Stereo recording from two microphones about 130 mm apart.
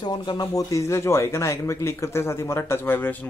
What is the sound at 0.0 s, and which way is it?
Speech, 30° left (ahead or behind).